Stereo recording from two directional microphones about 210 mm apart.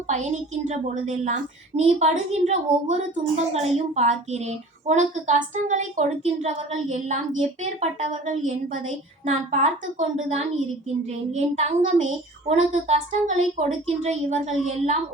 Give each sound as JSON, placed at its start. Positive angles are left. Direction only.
{"t": 0.1, "sound": "a woman's voice", "side_deg": -35}